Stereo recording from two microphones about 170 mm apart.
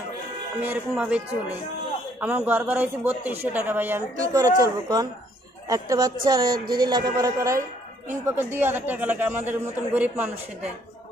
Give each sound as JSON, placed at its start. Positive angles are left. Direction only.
{"t": 0.6, "sound": "speech", "side_deg": -10}